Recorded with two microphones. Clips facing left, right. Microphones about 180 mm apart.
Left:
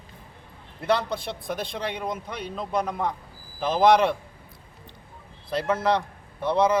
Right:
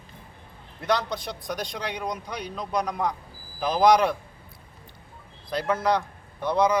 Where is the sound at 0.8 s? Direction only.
5° left (ahead or behind).